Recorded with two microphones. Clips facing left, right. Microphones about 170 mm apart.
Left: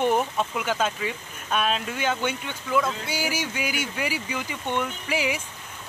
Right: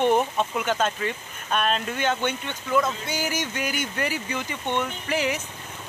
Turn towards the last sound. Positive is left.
turn(degrees=10)  # may be behind; listen again after turning